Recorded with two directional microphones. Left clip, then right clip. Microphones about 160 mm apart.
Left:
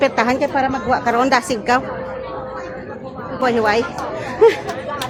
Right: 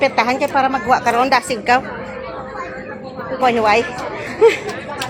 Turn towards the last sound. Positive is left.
turn(degrees=20)  # may be behind; listen again after turning